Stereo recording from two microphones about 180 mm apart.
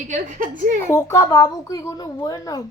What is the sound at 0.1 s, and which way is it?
Speech, 50° right (ahead or behind).